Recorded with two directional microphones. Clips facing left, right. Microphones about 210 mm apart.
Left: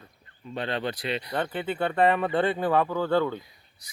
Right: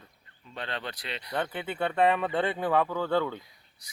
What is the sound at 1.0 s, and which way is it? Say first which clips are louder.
Speech: left 4 dB; 10° left (ahead or behind).